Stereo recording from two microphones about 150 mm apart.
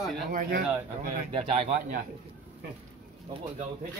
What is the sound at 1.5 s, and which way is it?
Speech, 55° right (ahead or behind).